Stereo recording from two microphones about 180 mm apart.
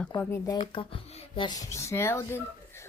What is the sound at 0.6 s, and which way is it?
Speech, 30° left (ahead or behind).